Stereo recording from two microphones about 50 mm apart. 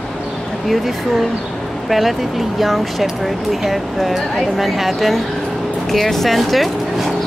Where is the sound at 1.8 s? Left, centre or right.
Centre.